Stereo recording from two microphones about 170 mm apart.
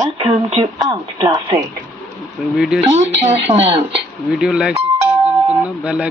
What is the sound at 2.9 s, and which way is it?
Speech, 40° right (ahead or behind).